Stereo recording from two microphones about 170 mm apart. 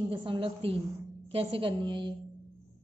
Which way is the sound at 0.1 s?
30° right (ahead or behind).